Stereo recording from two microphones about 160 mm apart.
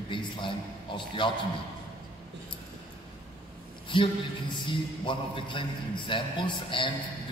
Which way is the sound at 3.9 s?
30° left (ahead or behind).